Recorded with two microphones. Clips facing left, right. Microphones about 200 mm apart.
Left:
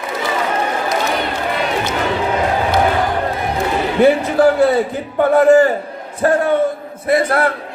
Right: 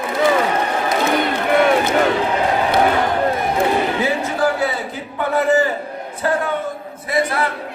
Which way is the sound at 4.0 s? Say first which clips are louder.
Left 8 dB; 60° left (ahead or behind).